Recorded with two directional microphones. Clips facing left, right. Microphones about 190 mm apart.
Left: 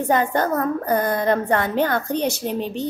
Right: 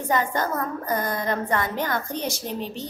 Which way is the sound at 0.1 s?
60° left (ahead or behind).